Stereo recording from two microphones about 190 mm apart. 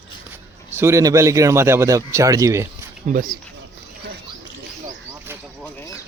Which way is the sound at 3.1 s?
45° right (ahead or behind).